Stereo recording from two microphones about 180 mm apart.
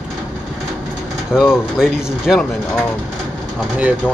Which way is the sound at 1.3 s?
5° right (ahead or behind).